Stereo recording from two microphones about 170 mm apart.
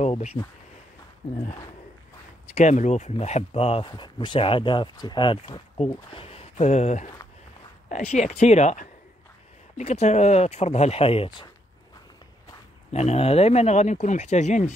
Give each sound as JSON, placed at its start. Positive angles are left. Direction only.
{"t": 0.0, "sound": "speech", "side_deg": 40}
{"t": 2.5, "sound": "speech", "side_deg": 45}
{"t": 12.9, "sound": "speech", "side_deg": 40}